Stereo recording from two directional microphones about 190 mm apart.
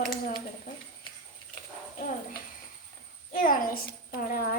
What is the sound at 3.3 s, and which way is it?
A woman's voice, 45° left (ahead or behind).